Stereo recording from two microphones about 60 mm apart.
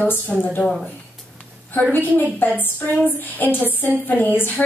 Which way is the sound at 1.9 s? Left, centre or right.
Left.